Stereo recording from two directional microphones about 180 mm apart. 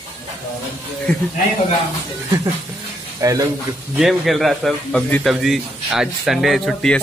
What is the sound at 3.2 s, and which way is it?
Speech, 20° right (ahead or behind).